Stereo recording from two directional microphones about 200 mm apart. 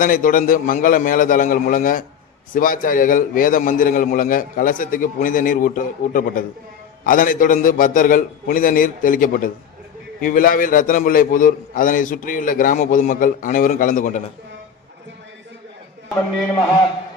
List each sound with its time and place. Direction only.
0.0 s a man's voice: 45° left (ahead or behind)